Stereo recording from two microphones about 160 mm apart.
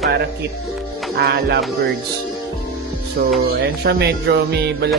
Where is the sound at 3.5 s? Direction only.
90° right.